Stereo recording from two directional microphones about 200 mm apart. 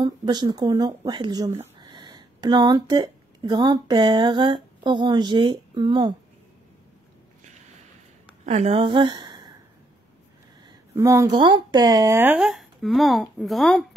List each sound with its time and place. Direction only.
0.0 s speech: 20° right (ahead or behind)
8.5 s a woman's voice: 35° right (ahead or behind)
11.0 s speech: 15° right (ahead or behind); by 13.8 s centre (ahead or behind)